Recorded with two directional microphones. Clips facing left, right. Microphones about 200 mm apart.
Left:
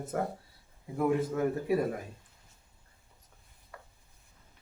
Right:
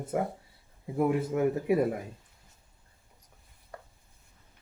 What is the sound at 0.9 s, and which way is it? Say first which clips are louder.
Speech: right 2 dB; 20° right (ahead or behind).